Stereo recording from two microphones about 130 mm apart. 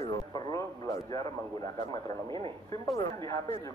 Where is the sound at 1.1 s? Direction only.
25° left (ahead or behind).